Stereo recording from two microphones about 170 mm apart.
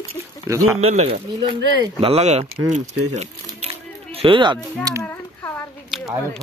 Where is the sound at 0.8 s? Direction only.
35° right (ahead or behind).